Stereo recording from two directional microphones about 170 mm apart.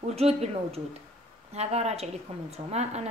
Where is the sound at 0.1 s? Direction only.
40° right (ahead or behind).